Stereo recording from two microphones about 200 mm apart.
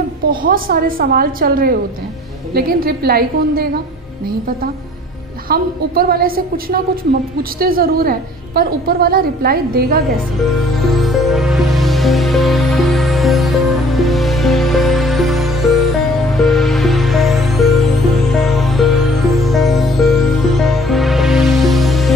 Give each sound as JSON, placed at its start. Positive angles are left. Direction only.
{"t": 0.3, "sound": "a woman's voice", "side_deg": -45}
{"t": 5.5, "sound": "a woman's voice", "side_deg": -50}
{"t": 10.8, "sound": "music", "side_deg": 0}